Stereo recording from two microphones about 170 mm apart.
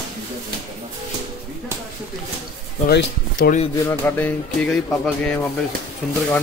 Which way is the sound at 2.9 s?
65° left (ahead or behind).